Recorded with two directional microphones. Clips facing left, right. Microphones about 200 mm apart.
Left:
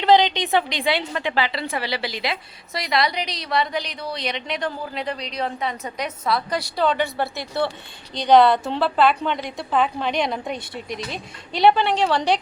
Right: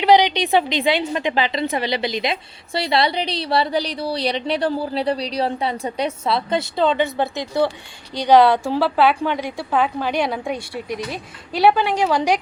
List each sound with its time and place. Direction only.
0.0 s a woman's voice: 15° right (ahead or behind)